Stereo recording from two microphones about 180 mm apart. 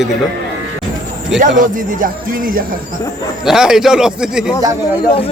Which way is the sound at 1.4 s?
45° right (ahead or behind).